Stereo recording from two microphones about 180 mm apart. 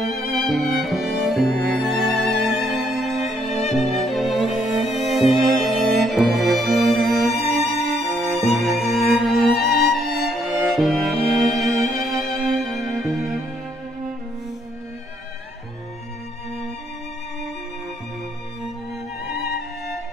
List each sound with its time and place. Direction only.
0.0 s music: centre (ahead or behind)